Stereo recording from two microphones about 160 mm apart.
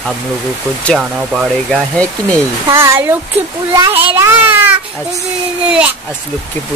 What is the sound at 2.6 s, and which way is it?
A child's voice, 15° right (ahead or behind).